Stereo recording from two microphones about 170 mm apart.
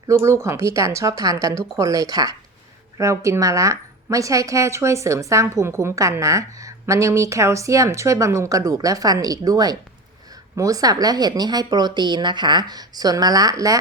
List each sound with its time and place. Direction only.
0.1 s a woman's voice: 15° right (ahead or behind)